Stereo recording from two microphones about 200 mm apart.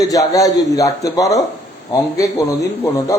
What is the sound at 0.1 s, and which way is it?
A man's voice, 15° left (ahead or behind).